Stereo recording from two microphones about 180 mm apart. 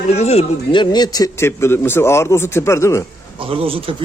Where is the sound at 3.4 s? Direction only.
30° right (ahead or behind).